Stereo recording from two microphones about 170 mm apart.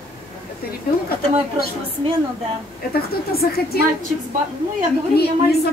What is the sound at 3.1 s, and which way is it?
Speech, 65° left (ahead or behind).